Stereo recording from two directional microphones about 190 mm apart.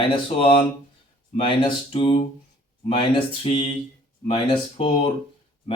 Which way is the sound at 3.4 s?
30° left (ahead or behind).